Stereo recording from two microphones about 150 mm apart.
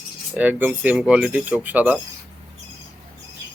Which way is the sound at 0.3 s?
10° right (ahead or behind).